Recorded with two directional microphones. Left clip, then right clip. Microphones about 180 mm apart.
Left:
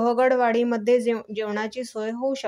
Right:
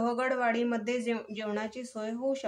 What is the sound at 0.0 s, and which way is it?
A woman's voice, 40° left (ahead or behind).